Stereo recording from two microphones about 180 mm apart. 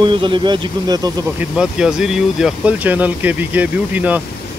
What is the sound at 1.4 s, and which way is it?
Speech, 5° right (ahead or behind).